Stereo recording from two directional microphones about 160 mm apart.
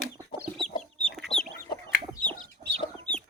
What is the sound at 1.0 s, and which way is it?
Chicken, centre (ahead or behind).